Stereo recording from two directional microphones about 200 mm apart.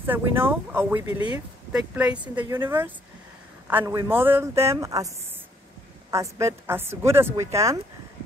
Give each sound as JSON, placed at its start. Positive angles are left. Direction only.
{"t": 0.0, "sound": "a woman's voice", "side_deg": -10}